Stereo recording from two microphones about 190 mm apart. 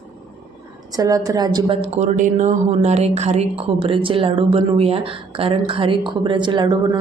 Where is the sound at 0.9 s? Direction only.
20° right (ahead or behind).